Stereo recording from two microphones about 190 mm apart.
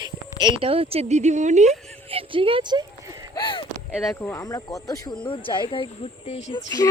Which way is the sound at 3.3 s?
25° left (ahead or behind).